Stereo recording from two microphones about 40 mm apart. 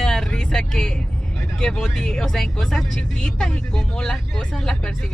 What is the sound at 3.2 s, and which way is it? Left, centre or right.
Speech, centre.